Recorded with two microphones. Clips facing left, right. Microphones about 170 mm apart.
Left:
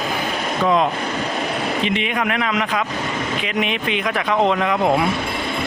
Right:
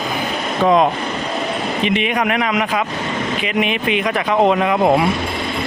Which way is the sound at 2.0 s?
15° right (ahead or behind).